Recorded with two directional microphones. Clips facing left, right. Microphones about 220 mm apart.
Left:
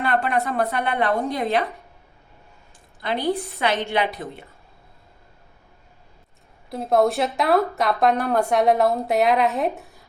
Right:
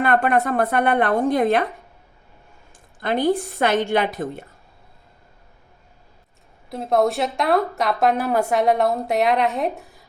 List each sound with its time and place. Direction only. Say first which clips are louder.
0.0 s a woman's voice: right 4 dB; 50° right (ahead or behind)
3.0 s a woman's voice: right 4 dB; 50° right (ahead or behind)
6.7 s a woman's voice: even; centre (ahead or behind)